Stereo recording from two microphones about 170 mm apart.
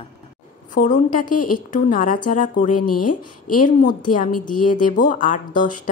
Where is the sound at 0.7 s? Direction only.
50° left (ahead or behind).